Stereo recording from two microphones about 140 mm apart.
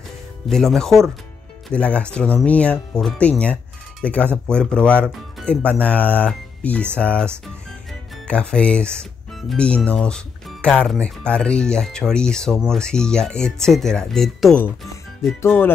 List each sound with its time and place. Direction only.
0.5 s speech: 5° left (ahead or behind)
8.3 s speech: 5° left (ahead or behind)
15.4 s speech: 15° left (ahead or behind)